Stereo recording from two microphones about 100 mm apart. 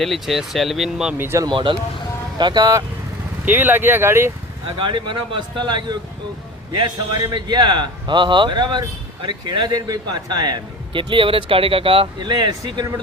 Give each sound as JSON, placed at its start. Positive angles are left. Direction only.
{"t": 0.0, "sound": "speech", "side_deg": 0}
{"t": 1.2, "sound": "speech", "side_deg": -25}
{"t": 1.5, "sound": "a man's voice", "side_deg": -55}
{"t": 3.4, "sound": "speech", "side_deg": -20}
{"t": 4.8, "sound": "a man's voice", "side_deg": -55}
{"t": 12.2, "sound": "a man's voice", "side_deg": -45}